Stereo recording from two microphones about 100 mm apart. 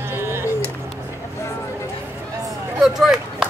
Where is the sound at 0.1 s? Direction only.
25° right (ahead or behind).